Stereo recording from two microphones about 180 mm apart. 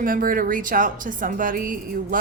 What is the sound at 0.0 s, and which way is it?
A woman's voice, 50° right (ahead or behind).